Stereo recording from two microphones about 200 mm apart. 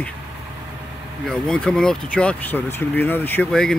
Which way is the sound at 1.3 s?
5° left (ahead or behind).